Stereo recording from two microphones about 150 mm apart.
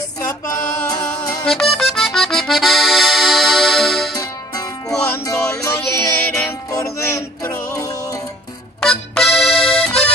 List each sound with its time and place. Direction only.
0.2 s music: 25° left (ahead or behind)
1.4 s accordion: centre (ahead or behind)
4.2 s music: 25° left (ahead or behind)
8.8 s accordion: 5° left (ahead or behind)